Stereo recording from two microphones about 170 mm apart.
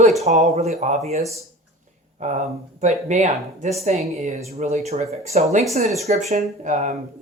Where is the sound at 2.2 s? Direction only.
45° right (ahead or behind).